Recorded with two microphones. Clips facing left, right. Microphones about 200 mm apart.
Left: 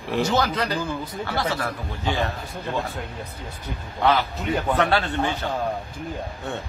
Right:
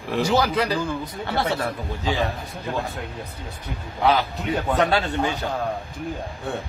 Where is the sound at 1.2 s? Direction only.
25° right (ahead or behind).